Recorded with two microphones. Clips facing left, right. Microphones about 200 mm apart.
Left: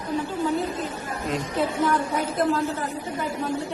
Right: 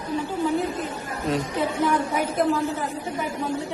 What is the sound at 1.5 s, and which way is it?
Speech, 15° right (ahead or behind).